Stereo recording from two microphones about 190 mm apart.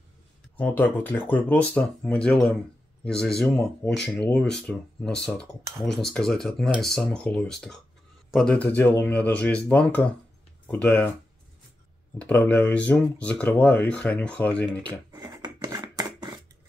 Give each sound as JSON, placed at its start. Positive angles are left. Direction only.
{"t": 0.6, "sound": "speech", "side_deg": 10}
{"t": 12.2, "sound": "speech", "side_deg": 10}
{"t": 15.1, "sound": "scissors", "side_deg": -20}